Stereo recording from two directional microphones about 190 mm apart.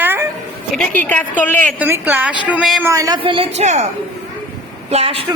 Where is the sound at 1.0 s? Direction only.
10° left (ahead or behind).